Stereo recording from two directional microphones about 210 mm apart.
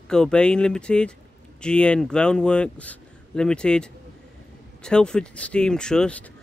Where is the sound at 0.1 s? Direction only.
5° left (ahead or behind).